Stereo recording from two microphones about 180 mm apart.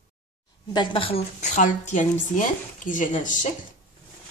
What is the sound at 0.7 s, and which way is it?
A woman's voice, 25° left (ahead or behind).